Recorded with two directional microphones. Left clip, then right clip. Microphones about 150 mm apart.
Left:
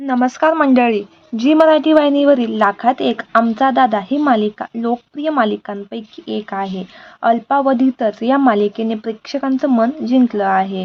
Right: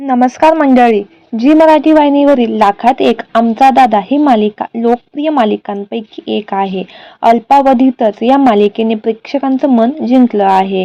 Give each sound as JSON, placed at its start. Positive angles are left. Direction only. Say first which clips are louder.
{"t": 0.0, "sound": "a woman's voice", "louder": "right 6 dB", "side_deg": -20}